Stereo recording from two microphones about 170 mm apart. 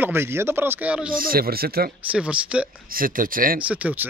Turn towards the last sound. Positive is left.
turn(degrees=-10)  # may be behind; listen again after turning